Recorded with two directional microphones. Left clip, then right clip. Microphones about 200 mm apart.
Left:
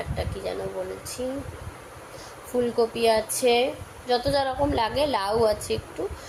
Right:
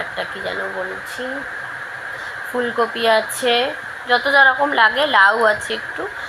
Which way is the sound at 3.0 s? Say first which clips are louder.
Right 5 dB; 20° right (ahead or behind).